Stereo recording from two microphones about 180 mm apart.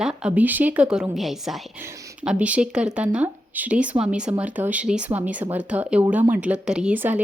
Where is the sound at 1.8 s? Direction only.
15° right (ahead or behind).